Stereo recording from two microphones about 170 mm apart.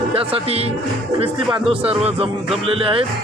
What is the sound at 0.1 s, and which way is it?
A man's voice, 35° right (ahead or behind).